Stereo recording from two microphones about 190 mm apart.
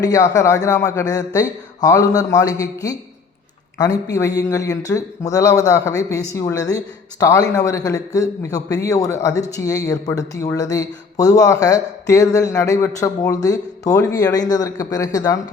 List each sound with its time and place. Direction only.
0.0 s speech: 20° left (ahead or behind)